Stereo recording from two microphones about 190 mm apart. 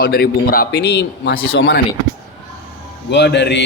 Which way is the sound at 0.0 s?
55° left (ahead or behind).